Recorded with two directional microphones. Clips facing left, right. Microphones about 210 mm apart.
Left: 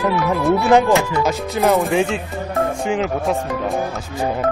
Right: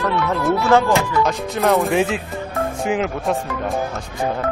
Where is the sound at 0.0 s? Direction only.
5° left (ahead or behind).